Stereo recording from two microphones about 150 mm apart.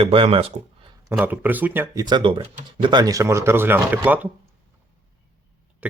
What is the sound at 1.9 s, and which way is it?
A man's voice, 30° right (ahead or behind).